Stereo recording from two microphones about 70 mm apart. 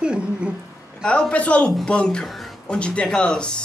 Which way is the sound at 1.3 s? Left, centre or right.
Centre.